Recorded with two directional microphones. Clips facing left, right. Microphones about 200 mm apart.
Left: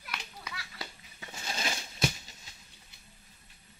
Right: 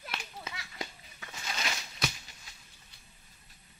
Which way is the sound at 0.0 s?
25° right (ahead or behind).